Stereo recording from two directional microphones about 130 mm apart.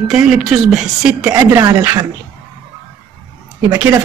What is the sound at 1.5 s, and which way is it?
Speech, 30° right (ahead or behind).